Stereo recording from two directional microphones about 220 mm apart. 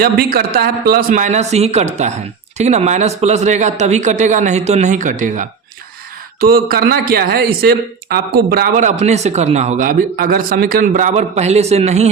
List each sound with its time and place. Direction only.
0.0 s a man's voice: 45° right (ahead or behind)